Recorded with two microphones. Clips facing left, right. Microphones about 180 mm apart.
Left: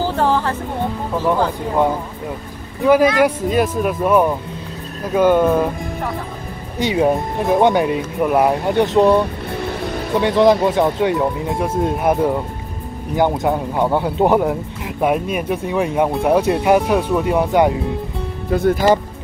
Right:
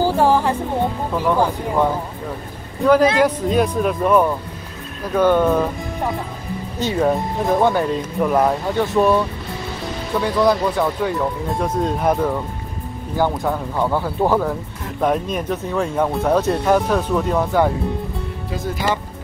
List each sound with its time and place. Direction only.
0.0 s speech: 10° right (ahead or behind)
2.8 s speech: 10° left (ahead or behind)
6.8 s speech: 10° left (ahead or behind)
7.6 s speech: 15° left (ahead or behind)
11.5 s speech: 10° left (ahead or behind)
15.0 s speech: 10° left (ahead or behind)
18.5 s speech: 55° left (ahead or behind)